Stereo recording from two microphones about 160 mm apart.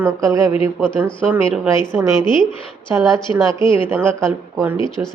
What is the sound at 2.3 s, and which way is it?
Speech, 30° left (ahead or behind).